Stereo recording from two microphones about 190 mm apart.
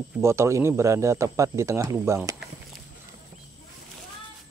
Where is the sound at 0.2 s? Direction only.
15° right (ahead or behind).